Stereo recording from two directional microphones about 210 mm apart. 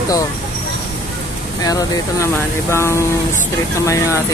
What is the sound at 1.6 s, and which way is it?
Speech, 15° left (ahead or behind).